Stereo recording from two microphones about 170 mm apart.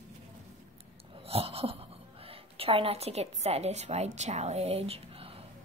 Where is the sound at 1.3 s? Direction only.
35° right (ahead or behind).